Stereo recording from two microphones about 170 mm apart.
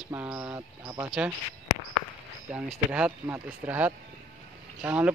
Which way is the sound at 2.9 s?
5° right (ahead or behind).